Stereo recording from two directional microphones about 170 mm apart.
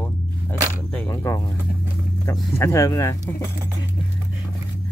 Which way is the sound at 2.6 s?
20° left (ahead or behind).